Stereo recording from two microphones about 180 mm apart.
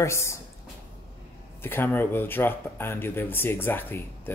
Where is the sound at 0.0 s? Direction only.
15° left (ahead or behind).